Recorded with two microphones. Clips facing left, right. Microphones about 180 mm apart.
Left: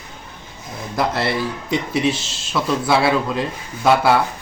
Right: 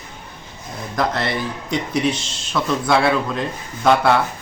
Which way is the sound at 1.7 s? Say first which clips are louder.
Even; 5° left (ahead or behind).